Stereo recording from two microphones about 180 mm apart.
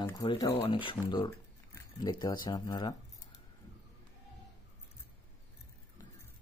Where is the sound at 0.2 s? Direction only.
25° left (ahead or behind).